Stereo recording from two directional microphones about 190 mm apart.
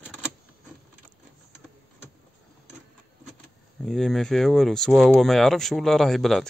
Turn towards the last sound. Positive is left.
turn(degrees=0)  # may be behind; listen again after turning